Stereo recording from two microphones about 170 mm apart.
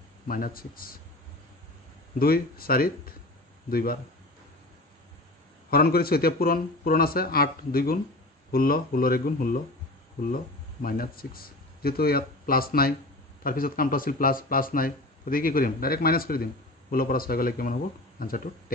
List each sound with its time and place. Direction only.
0.3 s speech: 55° left (ahead or behind)
2.1 s speech: 60° left (ahead or behind)
5.7 s speech: 65° left (ahead or behind)